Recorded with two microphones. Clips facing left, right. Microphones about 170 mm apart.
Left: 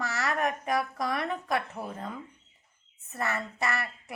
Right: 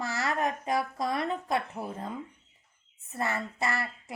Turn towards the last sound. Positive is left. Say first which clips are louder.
# even
turn(degrees=-25)  # may be behind; listen again after turning